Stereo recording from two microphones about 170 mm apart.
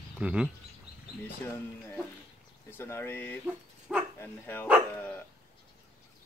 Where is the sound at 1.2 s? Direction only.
10° left (ahead or behind).